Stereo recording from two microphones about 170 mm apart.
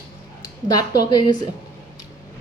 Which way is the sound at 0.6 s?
20° left (ahead or behind).